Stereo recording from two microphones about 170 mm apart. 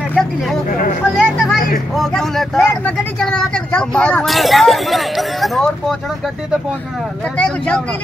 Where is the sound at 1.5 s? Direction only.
55° left (ahead or behind).